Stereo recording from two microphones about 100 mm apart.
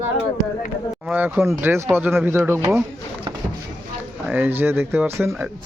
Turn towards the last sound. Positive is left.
turn(degrees=-25)  # may be behind; listen again after turning